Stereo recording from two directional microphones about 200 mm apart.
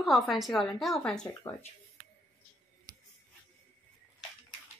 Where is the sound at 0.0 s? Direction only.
Centre (ahead or behind).